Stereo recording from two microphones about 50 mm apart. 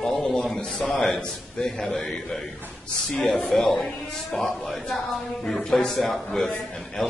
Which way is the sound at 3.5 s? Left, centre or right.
Centre.